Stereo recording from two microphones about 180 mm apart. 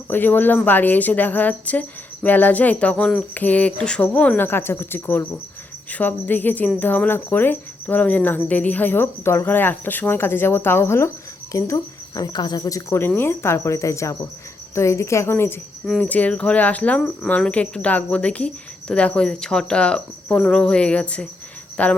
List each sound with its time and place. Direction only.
0.1 s speech: 10° left (ahead or behind)